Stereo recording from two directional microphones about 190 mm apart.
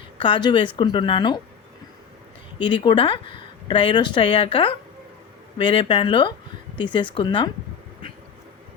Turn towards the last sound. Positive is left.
turn(degrees=25)  # may be behind; listen again after turning